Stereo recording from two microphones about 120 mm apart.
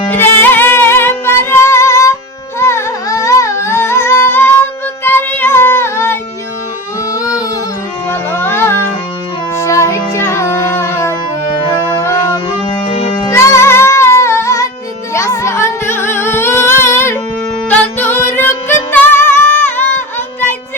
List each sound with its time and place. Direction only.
0.0 s music: 15° left (ahead or behind)
5.0 s child singing: 15° left (ahead or behind)
7.1 s humming: 25° left (ahead or behind)
8.1 s music: 20° left (ahead or behind)
11.7 s music: 40° left (ahead or behind)
13.1 s music: 25° left (ahead or behind)